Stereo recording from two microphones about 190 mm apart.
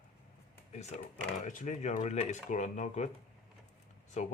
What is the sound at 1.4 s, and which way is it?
Speech, 40° left (ahead or behind).